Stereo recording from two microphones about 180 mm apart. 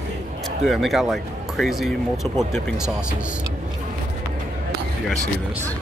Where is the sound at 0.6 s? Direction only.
Centre (ahead or behind).